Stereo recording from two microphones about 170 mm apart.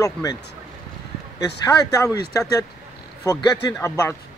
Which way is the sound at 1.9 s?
15° left (ahead or behind).